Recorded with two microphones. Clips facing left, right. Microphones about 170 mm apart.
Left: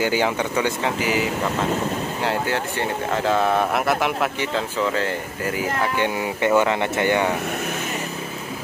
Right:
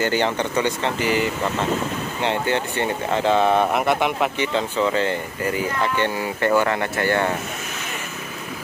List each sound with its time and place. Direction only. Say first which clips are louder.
0.0 s speech: even; 10° left (ahead or behind)
5.9 s speech: even; 15° left (ahead or behind)